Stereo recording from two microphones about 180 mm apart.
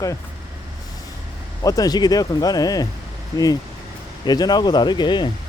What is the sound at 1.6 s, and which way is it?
Speech, 20° left (ahead or behind).